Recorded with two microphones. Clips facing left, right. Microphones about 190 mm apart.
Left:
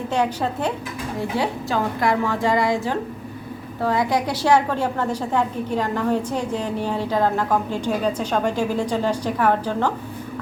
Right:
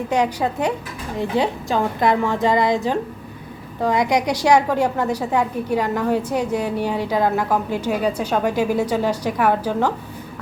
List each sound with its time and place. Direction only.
0.1 s a woman's voice: 10° right (ahead or behind)